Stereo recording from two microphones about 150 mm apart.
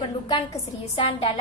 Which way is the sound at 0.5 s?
40° left (ahead or behind).